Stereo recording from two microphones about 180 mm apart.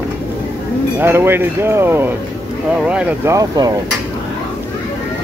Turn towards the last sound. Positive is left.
turn(degrees=-20)  # may be behind; listen again after turning